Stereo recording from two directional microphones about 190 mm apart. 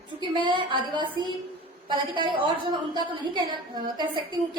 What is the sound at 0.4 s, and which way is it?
A woman's voice, 25° right (ahead or behind).